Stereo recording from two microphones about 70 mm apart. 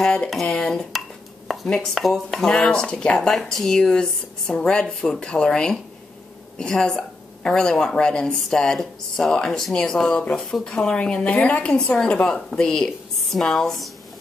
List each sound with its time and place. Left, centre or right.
0.0 s speech: centre
2.0 s speech: centre